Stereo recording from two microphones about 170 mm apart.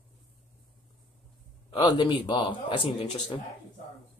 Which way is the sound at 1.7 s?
25° left (ahead or behind).